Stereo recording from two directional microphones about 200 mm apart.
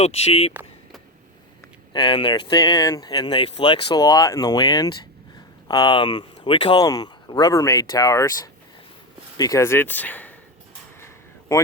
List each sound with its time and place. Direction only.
0.0 s speech: 30° left (ahead or behind)
1.9 s speech: 25° left (ahead or behind); by 10.3 s 10° left (ahead or behind)
11.0 s a sound: 15° left (ahead or behind)